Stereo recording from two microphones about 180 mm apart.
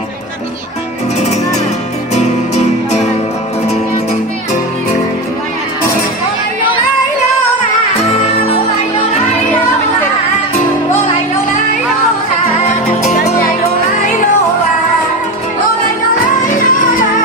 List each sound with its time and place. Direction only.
2.1 s music: 40° left (ahead or behind)
16.4 s music: 50° left (ahead or behind)